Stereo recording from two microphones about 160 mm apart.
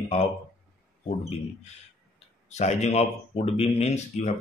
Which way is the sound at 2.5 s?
45° left (ahead or behind).